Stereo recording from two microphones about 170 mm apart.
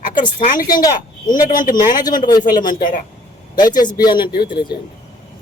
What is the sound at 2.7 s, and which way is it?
Speech, 50° left (ahead or behind).